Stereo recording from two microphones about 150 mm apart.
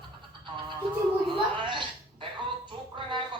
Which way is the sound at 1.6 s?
30° right (ahead or behind).